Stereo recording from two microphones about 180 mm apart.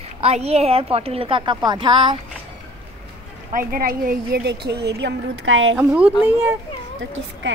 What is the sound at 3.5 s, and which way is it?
A woman's voice, 50° right (ahead or behind).